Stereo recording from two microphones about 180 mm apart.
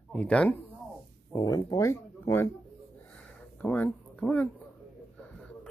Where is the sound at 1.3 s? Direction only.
20° left (ahead or behind).